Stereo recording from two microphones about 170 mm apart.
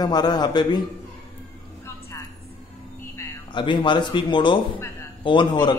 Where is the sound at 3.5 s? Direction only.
30° left (ahead or behind).